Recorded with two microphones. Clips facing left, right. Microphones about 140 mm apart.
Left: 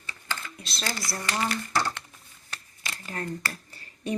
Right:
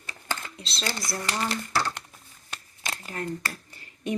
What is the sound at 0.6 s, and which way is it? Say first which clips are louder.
Speech: right 1 dB; 25° right (ahead or behind).